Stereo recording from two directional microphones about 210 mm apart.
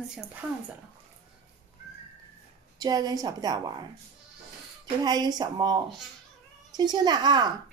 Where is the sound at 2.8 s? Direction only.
20° right (ahead or behind).